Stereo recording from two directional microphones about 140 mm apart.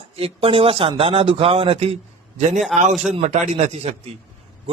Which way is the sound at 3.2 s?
50° right (ahead or behind).